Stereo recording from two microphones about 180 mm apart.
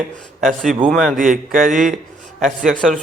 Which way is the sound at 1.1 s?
50° right (ahead or behind).